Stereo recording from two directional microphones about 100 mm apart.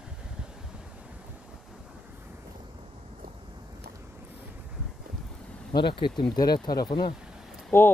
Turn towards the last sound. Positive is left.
turn(degrees=25)  # may be behind; listen again after turning